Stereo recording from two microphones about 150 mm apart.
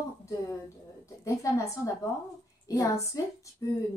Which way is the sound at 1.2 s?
20° left (ahead or behind).